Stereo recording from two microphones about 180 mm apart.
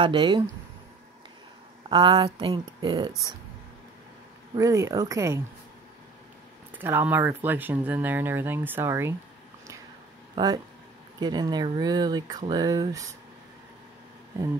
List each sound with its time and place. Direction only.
0.0 s speech: 25° right (ahead or behind)
1.9 s speech: 30° right (ahead or behind)
4.6 s speech: 20° right (ahead or behind)
6.8 s speech: 10° right (ahead or behind)
10.3 s speech: 20° right (ahead or behind)